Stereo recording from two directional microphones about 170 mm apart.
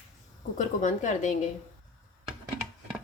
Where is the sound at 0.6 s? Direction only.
45° left (ahead or behind).